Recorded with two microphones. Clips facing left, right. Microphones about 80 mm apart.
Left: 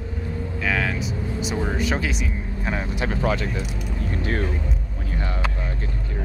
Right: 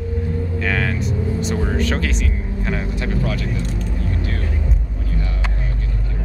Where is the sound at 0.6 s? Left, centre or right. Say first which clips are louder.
Right 1 dB; centre.